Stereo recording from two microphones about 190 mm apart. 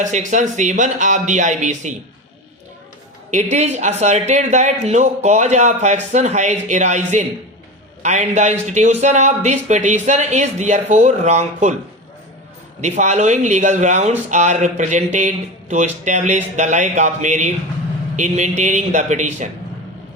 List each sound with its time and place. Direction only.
0.0 s speech: 40° right (ahead or behind)
3.3 s speech: 35° right (ahead or behind)
12.8 s speech: 40° right (ahead or behind)